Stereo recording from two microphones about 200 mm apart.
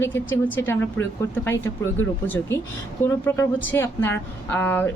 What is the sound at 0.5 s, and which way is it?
A woman's voice, 10° left (ahead or behind).